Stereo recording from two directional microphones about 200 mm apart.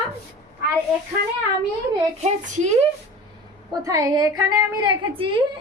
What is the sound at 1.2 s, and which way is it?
Speech, 50° right (ahead or behind).